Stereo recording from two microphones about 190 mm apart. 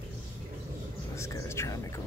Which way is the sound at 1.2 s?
15° left (ahead or behind).